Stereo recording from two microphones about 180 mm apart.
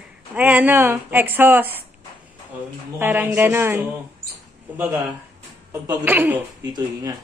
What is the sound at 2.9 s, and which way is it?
Speech, 10° right (ahead or behind).